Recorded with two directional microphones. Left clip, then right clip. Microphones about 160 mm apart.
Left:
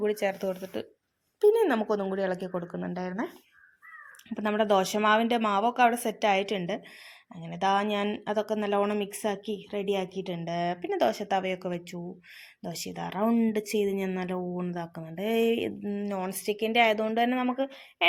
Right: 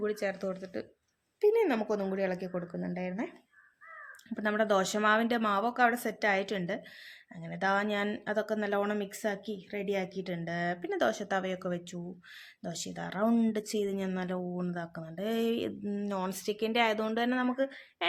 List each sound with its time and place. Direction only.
0.0 s speech: 20° left (ahead or behind)
4.4 s speech: 10° left (ahead or behind)